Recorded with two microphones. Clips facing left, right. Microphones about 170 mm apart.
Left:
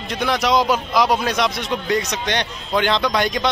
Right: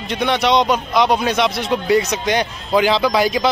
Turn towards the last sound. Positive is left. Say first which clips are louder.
# right 4 dB
turn(degrees=-5)  # may be behind; listen again after turning